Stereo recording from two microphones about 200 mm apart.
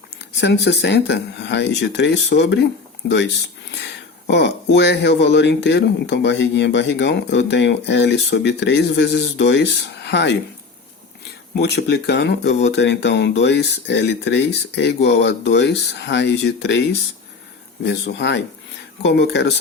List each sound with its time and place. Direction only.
0.3 s speech: 60° left (ahead or behind)
11.5 s speech: 55° left (ahead or behind)